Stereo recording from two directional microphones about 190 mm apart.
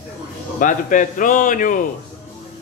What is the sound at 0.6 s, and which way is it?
A man's voice, 45° left (ahead or behind).